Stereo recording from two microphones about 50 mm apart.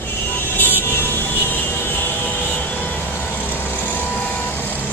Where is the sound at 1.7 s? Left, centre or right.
Left.